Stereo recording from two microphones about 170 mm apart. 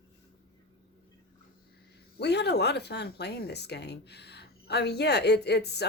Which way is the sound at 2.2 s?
80° left.